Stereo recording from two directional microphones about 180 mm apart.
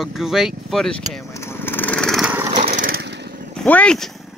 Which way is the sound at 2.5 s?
50° right (ahead or behind).